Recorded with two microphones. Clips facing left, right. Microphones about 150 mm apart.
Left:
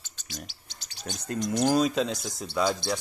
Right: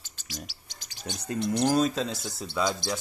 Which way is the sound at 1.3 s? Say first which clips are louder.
Right 1 dB; 40° left (ahead or behind).